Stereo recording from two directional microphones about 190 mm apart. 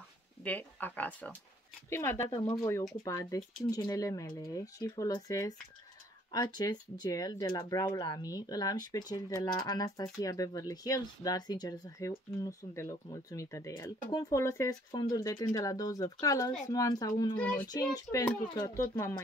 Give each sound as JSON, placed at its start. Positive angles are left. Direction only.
{"t": 0.4, "sound": "speech", "side_deg": 10}
{"t": 17.4, "sound": "speech", "side_deg": 5}
{"t": 17.6, "sound": "speech", "side_deg": 20}